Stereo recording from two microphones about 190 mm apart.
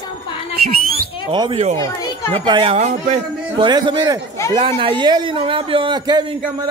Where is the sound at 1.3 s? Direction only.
25° right (ahead or behind).